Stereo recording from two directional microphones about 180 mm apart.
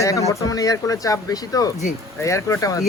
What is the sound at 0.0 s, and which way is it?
Speech, 15° left (ahead or behind).